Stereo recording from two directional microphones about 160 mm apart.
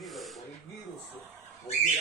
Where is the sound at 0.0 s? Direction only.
Centre (ahead or behind).